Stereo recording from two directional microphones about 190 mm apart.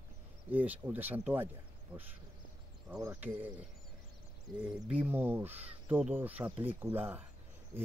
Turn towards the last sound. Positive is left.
turn(degrees=-15)  # may be behind; listen again after turning